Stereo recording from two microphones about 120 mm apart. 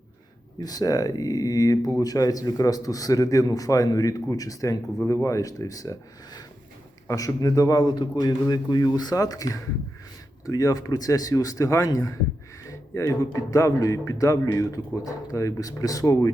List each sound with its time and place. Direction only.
0.6 s a man's voice: 30° left (ahead or behind)